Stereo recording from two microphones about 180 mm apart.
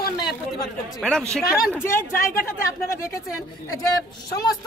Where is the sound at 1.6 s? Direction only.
15° left (ahead or behind).